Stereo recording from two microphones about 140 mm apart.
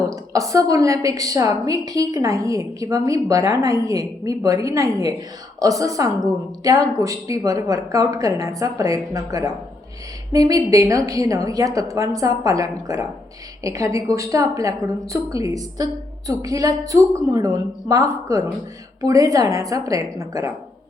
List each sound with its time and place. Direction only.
0.1 s a woman's voice: 25° right (ahead or behind)